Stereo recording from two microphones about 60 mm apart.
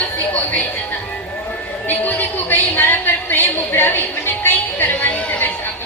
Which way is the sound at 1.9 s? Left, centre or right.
Left.